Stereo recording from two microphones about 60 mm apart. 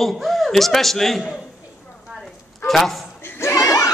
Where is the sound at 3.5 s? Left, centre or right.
Left.